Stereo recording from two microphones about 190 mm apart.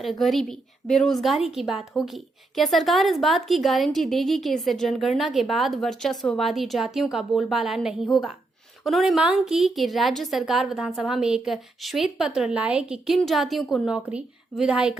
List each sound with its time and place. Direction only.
0.0 s a woman's voice: centre (ahead or behind)